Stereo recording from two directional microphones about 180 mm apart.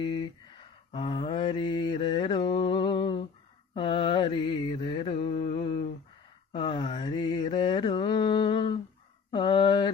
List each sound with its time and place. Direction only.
0.9 s mantra: 30° left (ahead or behind)